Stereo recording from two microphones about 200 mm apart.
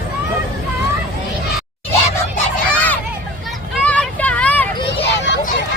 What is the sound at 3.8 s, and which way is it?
Vehicle, 5° left (ahead or behind).